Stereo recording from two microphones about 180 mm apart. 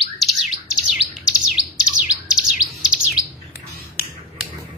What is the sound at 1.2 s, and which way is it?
Bird, 5° right (ahead or behind).